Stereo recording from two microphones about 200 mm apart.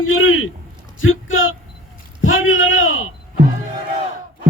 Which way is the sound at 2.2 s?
80° left.